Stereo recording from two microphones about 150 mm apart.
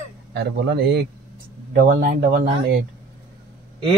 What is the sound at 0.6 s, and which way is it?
Speech, 90° right.